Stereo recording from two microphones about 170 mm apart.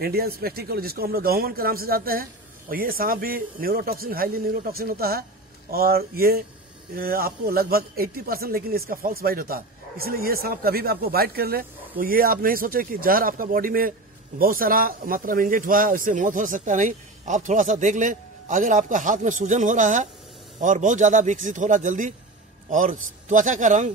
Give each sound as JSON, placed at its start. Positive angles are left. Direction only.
{"t": 0.0, "sound": "speech", "side_deg": -65}